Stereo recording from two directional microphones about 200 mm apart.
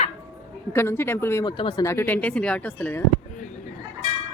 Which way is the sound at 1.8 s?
10° left (ahead or behind).